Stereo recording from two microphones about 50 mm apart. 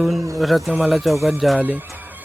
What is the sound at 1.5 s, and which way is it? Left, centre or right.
Speech, right.